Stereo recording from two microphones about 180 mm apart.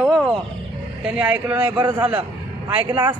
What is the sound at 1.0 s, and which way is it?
Speech, 5° right (ahead or behind).